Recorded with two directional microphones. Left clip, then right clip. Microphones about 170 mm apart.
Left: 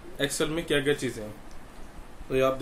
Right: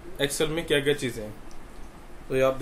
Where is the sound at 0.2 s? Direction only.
Centre (ahead or behind).